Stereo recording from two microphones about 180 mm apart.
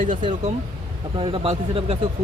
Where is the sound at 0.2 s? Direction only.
30° right (ahead or behind).